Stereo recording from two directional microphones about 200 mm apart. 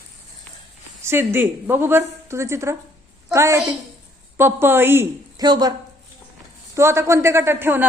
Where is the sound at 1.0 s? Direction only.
10° right (ahead or behind).